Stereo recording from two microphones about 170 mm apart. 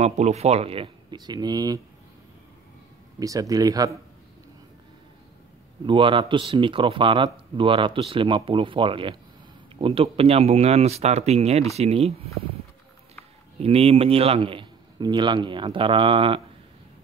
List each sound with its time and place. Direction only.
0.0 s a man's voice: 40° right (ahead or behind); by 1.8 s 20° right (ahead or behind)
3.2 s speech: 20° right (ahead or behind)
5.9 s a man's voice: 30° right (ahead or behind)
13.6 s a man's voice: 35° right (ahead or behind)